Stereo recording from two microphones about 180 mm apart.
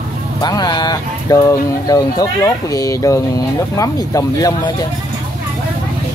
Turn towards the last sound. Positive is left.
turn(degrees=20)  # may be behind; listen again after turning